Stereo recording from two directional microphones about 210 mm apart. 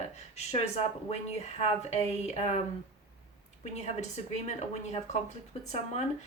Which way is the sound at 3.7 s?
30° left (ahead or behind).